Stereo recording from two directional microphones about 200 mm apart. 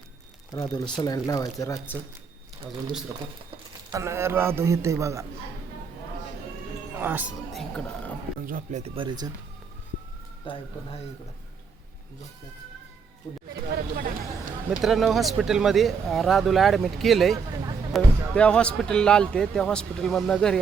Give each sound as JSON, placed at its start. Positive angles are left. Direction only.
{"t": 0.5, "sound": "speech", "side_deg": 20}
{"t": 3.8, "sound": "a man's voice", "side_deg": -15}
{"t": 6.9, "sound": "speech", "side_deg": -10}
{"t": 8.4, "sound": "speech", "side_deg": -40}
{"t": 9.0, "sound": "speech", "side_deg": -20}
{"t": 10.4, "sound": "speech", "side_deg": 25}
{"t": 13.7, "sound": "speech", "side_deg": -50}
{"t": 14.8, "sound": "speech", "side_deg": 0}